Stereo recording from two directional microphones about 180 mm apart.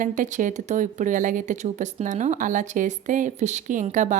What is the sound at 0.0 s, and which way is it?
A woman's voice, 45° right (ahead or behind).